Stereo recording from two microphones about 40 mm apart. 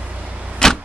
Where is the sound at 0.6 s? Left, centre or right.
Centre.